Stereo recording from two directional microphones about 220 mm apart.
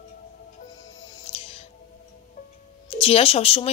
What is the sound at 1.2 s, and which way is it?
Music, 25° left (ahead or behind).